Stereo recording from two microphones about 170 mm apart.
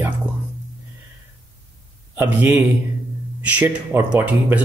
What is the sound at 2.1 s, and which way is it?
Speech, 10° right (ahead or behind).